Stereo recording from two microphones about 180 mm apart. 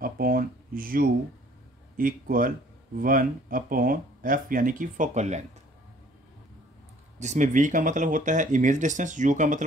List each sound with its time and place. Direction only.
0.0 s speech: 55° right (ahead or behind)
7.2 s speech: 40° right (ahead or behind)